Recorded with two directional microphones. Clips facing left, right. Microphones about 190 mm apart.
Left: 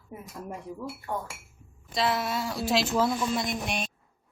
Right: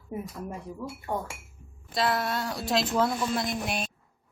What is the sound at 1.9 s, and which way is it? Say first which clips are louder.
A woman's voice: even; centre (ahead or behind).